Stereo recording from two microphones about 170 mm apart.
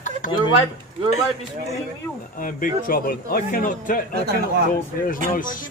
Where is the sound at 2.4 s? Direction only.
55° left (ahead or behind).